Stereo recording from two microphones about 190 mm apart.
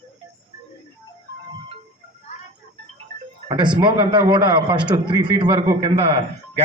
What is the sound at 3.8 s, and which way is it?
A man's voice, 25° right (ahead or behind).